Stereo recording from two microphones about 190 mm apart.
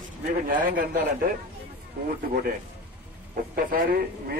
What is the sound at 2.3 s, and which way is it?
Speech, 50° right (ahead or behind).